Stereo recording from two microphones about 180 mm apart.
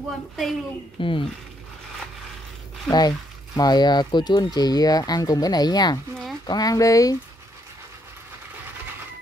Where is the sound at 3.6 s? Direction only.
25° left (ahead or behind).